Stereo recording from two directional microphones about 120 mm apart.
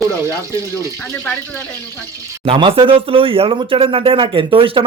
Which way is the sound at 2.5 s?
50° right (ahead or behind).